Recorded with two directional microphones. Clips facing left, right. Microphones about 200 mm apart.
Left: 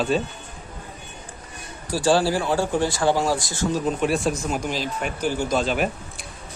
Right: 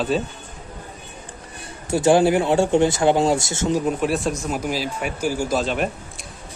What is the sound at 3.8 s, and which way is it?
Speech, centre (ahead or behind).